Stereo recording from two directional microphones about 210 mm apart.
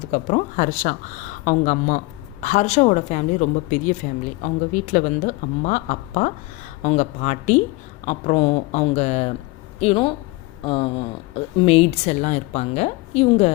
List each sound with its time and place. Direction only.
0.1 s speech: 35° left (ahead or behind)